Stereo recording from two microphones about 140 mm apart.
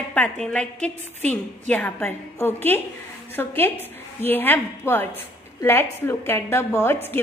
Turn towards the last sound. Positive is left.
turn(degrees=15)  # may be behind; listen again after turning